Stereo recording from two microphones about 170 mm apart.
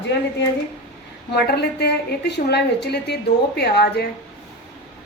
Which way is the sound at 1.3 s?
75° left (ahead or behind).